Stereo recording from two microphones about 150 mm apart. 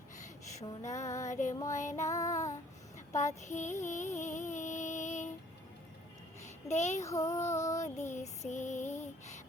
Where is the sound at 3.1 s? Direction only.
50° left (ahead or behind).